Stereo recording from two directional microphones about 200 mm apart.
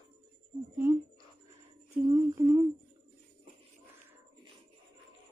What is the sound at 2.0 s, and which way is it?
Humming, 20° right (ahead or behind).